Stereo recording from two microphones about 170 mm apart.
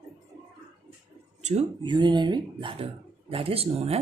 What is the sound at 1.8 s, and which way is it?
Speech, 25° right (ahead or behind).